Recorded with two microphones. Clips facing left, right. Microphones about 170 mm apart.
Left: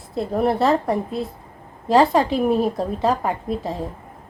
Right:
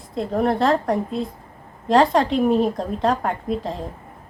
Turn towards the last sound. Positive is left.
turn(degrees=5)  # may be behind; listen again after turning